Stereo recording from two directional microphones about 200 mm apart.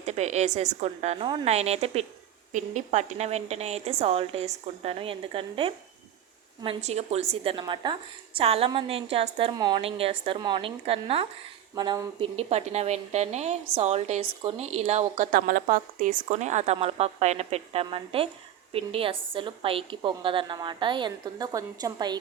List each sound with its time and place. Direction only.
0.0 s a woman's voice: 35° right (ahead or behind)